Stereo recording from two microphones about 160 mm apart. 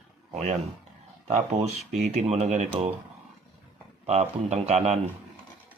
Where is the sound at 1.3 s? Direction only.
40° right (ahead or behind).